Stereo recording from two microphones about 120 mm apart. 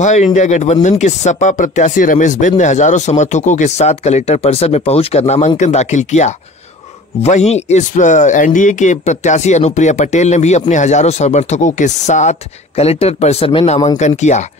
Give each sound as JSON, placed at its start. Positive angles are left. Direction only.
{"t": 0.0, "sound": "a man's voice", "side_deg": 80}
{"t": 13.9, "sound": "a man's voice", "side_deg": 80}